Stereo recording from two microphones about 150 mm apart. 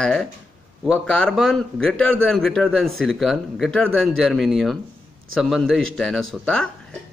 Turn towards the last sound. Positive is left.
turn(degrees=5)  # may be behind; listen again after turning